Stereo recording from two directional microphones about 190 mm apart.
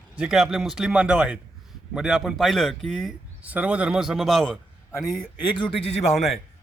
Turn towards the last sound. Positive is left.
turn(degrees=0)  # may be behind; listen again after turning